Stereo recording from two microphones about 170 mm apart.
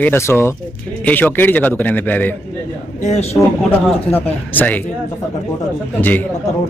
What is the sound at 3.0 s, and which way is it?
Speech, 40° left (ahead or behind).